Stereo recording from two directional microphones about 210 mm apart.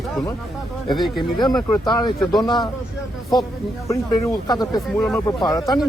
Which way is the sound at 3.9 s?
15° left (ahead or behind).